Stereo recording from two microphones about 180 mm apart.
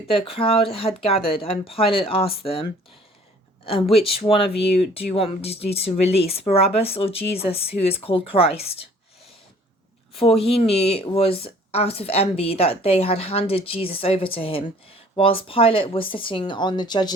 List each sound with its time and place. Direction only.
0.1 s speech: 30° left (ahead or behind)
3.7 s speech: 30° left (ahead or behind)
10.2 s speech: 30° left (ahead or behind)